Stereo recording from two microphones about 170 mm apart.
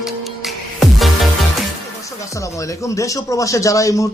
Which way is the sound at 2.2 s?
20° left (ahead or behind).